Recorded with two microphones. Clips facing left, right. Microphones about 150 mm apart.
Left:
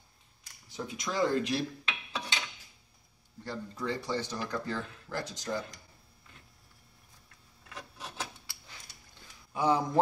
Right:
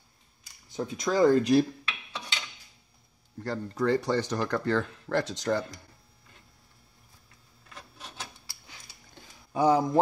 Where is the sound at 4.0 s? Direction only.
70° right (ahead or behind).